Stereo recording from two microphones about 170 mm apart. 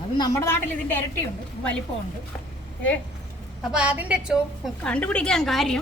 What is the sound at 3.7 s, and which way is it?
Speech, 10° right (ahead or behind).